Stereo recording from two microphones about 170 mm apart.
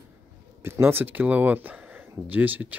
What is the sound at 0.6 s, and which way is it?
Speech, 15° right (ahead or behind).